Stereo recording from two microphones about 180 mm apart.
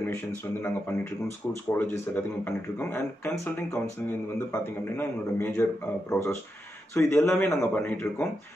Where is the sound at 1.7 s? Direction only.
10° left (ahead or behind).